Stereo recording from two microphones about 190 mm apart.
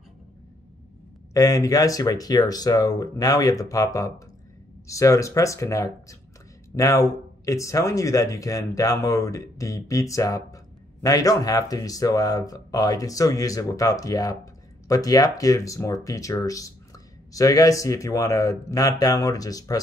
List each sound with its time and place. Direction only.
1.3 s speech: 20° left (ahead or behind)